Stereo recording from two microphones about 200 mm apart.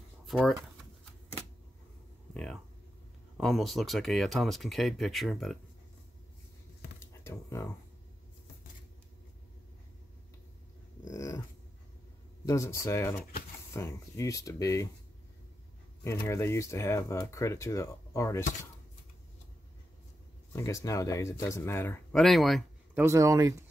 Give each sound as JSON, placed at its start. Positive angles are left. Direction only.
{"t": 0.3, "sound": "speech", "side_deg": 0}
{"t": 2.3, "sound": "a sound", "side_deg": 5}
{"t": 3.3, "sound": "speech", "side_deg": 0}
{"t": 7.2, "sound": "speech", "side_deg": 15}
{"t": 11.1, "sound": "dog", "side_deg": 15}
{"t": 12.4, "sound": "speech", "side_deg": 15}
{"t": 16.0, "sound": "speech", "side_deg": 15}
{"t": 20.5, "sound": "speech", "side_deg": 15}
{"t": 22.9, "sound": "speech", "side_deg": -15}